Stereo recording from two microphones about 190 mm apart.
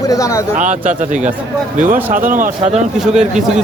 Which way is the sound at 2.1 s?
45° right (ahead or behind).